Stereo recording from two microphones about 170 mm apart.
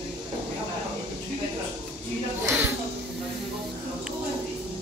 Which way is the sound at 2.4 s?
15° right (ahead or behind).